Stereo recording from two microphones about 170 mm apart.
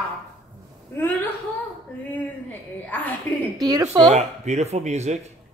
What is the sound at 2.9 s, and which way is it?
Speech, 10° left (ahead or behind).